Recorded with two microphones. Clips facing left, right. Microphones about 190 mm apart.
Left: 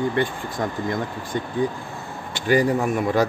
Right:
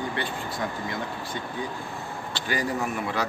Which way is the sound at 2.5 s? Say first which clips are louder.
Left 9 dB; 45° left (ahead or behind).